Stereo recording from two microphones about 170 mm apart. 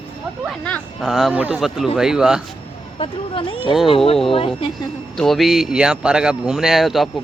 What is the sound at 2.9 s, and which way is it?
Speech, 35° left (ahead or behind).